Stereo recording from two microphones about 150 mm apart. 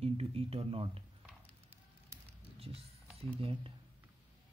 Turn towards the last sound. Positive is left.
turn(degrees=-35)  # may be behind; listen again after turning